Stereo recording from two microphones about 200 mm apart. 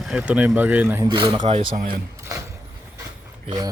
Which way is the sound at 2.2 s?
15° right (ahead or behind).